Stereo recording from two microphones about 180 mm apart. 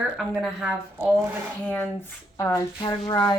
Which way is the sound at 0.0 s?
Centre (ahead or behind).